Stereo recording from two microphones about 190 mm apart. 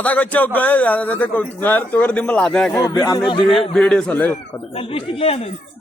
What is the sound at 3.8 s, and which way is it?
Speech, 5° left (ahead or behind).